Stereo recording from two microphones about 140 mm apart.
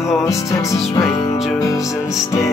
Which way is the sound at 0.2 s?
20° left (ahead or behind).